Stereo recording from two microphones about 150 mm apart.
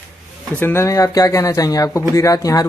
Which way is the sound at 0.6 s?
15° left (ahead or behind).